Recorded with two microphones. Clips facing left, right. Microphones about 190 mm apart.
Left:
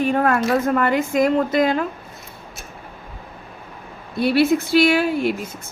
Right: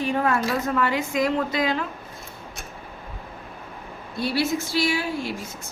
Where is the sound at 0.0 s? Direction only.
55° left (ahead or behind).